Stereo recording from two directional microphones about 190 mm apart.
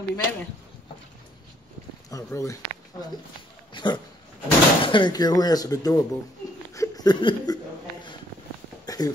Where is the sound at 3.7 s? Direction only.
25° left (ahead or behind).